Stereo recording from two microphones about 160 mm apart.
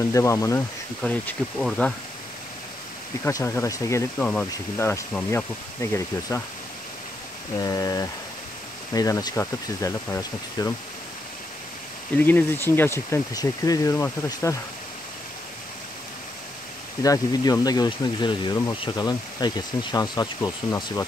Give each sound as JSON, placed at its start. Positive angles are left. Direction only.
{"t": 0.0, "sound": "speech", "side_deg": 20}
{"t": 3.3, "sound": "speech", "side_deg": 15}
{"t": 7.5, "sound": "speech", "side_deg": 25}
{"t": 12.2, "sound": "speech", "side_deg": 10}
{"t": 17.0, "sound": "speech", "side_deg": 20}